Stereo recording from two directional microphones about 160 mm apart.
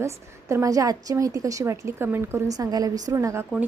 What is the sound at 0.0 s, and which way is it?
A woman's voice, 20° right (ahead or behind).